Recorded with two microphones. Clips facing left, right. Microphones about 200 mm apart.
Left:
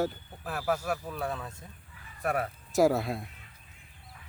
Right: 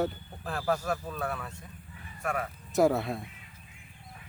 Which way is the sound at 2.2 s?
40° left (ahead or behind).